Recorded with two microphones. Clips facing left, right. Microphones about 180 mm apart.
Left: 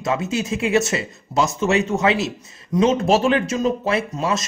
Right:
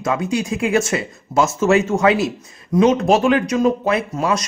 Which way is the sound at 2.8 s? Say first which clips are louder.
Right 2 dB; 30° left (ahead or behind).